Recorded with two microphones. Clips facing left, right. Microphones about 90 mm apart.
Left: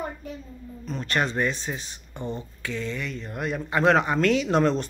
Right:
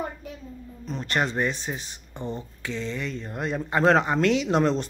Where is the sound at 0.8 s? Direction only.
25° right (ahead or behind).